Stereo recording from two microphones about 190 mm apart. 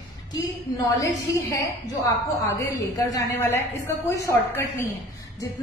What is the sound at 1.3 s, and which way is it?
Speech, 15° left (ahead or behind).